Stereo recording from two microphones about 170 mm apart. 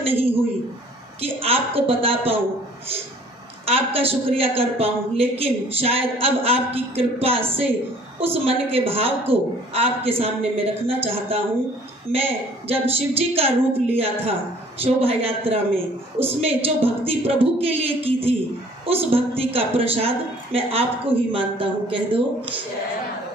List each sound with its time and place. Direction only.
1.2 s a woman's voice: 35° right (ahead or behind)
3.6 s a woman's voice: 35° right (ahead or behind)
12.1 s a woman's voice: 35° right (ahead or behind)